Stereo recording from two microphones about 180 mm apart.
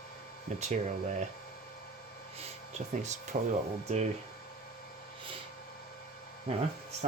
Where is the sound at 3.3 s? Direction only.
45° right (ahead or behind).